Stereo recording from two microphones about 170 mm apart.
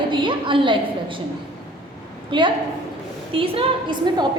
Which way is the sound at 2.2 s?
30° right (ahead or behind).